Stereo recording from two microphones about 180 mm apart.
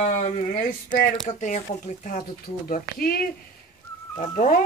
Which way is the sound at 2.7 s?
55° left (ahead or behind).